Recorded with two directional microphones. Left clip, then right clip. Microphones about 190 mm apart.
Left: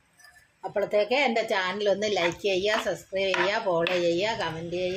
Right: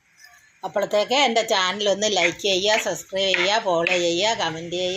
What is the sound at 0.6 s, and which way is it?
Speech, 20° right (ahead or behind).